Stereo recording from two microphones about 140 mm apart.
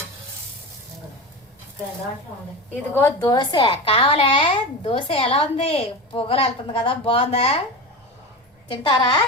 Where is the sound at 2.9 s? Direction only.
20° left (ahead or behind); by 7.6 s 45° left (ahead or behind).